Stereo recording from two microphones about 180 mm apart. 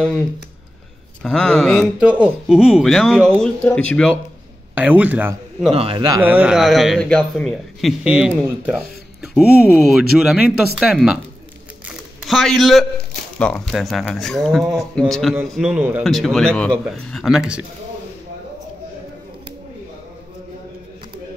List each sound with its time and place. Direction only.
1.2 s speech: 5° left (ahead or behind)
4.7 s speech: 10° right (ahead or behind)
5.7 s a man's voice: 30° right (ahead or behind)
6.2 s speech: 10° right (ahead or behind)
11.9 s a sound: centre (ahead or behind)
13.4 s speech: 5° left (ahead or behind)